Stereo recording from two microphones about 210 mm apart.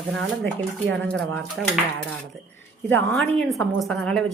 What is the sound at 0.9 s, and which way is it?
Speech, 5° left (ahead or behind).